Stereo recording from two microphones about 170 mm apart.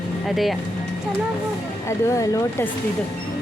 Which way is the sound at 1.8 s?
15° left (ahead or behind).